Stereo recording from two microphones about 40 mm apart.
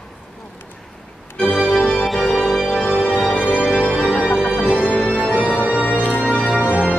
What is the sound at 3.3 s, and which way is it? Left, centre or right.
Organ, left.